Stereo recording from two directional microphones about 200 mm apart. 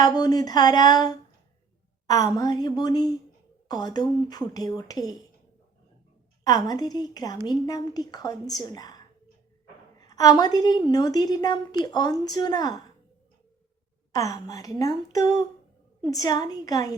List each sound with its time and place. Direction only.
0.0 s a woman's voice: 20° left (ahead or behind)
6.4 s a woman's voice: 20° left (ahead or behind)
10.0 s a woman's voice: 15° left (ahead or behind)
14.1 s a woman's voice: 15° left (ahead or behind)